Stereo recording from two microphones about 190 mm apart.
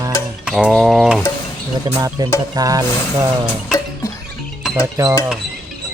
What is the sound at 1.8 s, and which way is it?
Speech, 20° right (ahead or behind).